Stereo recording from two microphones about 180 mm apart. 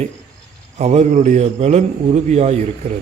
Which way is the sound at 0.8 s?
40° right (ahead or behind).